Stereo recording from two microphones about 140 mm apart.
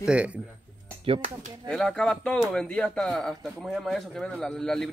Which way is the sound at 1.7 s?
5° left (ahead or behind).